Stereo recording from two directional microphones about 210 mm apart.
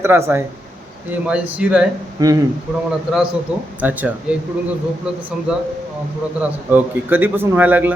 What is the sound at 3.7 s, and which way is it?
Speech, 5° right (ahead or behind).